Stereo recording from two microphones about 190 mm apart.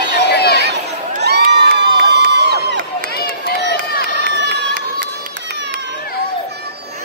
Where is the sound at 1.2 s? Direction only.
60° right (ahead or behind).